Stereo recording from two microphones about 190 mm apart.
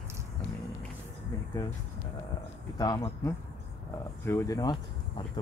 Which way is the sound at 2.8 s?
20° left (ahead or behind).